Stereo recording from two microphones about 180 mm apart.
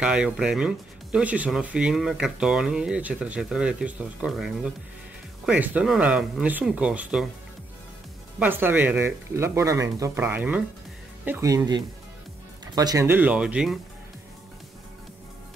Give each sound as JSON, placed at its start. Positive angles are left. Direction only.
{"t": 0.0, "sound": "speech", "side_deg": -5}
{"t": 8.4, "sound": "speech", "side_deg": -10}